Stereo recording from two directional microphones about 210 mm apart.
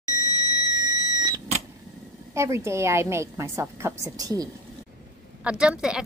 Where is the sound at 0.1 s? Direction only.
20° right (ahead or behind).